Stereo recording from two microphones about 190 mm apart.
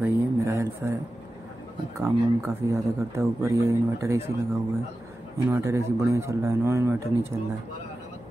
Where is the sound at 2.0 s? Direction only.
15° right (ahead or behind).